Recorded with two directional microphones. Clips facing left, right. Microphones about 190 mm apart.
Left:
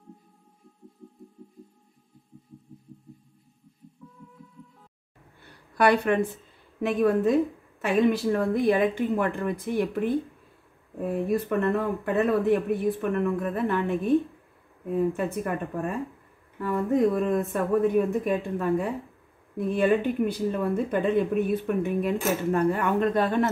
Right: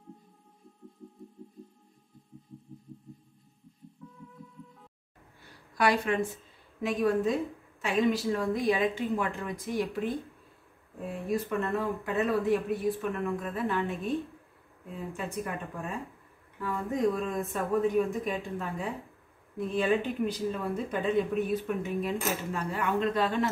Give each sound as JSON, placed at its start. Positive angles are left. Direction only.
{"t": 4.0, "sound": "hum", "side_deg": 0}
{"t": 5.4, "sound": "a sound", "side_deg": 60}
{"t": 6.8, "sound": "speech", "side_deg": 55}
{"t": 16.9, "sound": "speech", "side_deg": 55}